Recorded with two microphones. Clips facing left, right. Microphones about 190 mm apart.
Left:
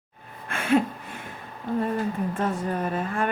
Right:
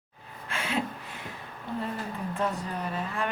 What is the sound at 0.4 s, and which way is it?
Gasp, 55° left (ahead or behind).